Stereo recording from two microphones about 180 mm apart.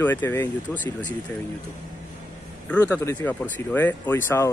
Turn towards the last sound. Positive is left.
turn(degrees=10)  # may be behind; listen again after turning